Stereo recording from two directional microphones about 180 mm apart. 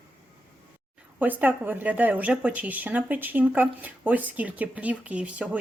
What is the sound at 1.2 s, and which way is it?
Speech, 10° right (ahead or behind).